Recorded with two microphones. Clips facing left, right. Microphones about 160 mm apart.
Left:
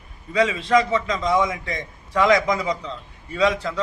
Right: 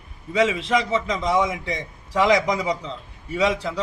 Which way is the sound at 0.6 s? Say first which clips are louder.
Left 3 dB; 20° right (ahead or behind).